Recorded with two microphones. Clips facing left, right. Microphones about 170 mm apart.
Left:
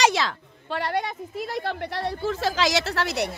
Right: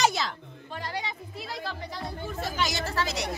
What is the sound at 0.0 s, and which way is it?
A woman's voice, 90° left.